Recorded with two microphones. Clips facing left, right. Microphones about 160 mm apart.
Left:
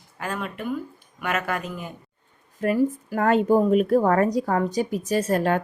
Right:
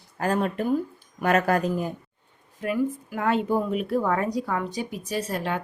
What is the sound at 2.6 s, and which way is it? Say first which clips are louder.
Speech: left 4 dB; 40° left (ahead or behind).